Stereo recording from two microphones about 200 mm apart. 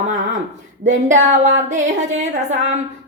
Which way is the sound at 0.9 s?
40° right (ahead or behind).